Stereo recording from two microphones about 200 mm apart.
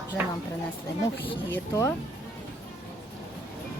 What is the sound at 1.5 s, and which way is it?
Speech, 15° left (ahead or behind).